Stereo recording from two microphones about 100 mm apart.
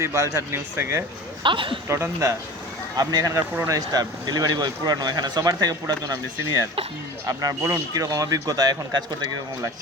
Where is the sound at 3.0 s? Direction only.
35° right (ahead or behind).